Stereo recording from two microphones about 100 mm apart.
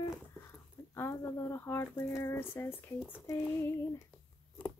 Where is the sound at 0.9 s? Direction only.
25° left (ahead or behind).